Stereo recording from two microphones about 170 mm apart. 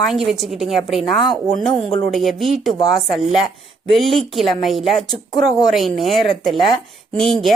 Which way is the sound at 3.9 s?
Centre (ahead or behind).